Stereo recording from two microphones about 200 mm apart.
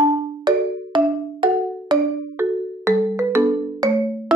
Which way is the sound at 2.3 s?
15° right (ahead or behind).